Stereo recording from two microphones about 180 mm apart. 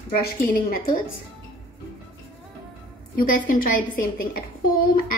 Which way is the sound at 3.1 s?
50° left (ahead or behind).